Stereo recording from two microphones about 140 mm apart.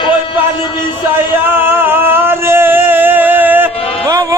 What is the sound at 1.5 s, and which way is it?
Music, 15° right (ahead or behind).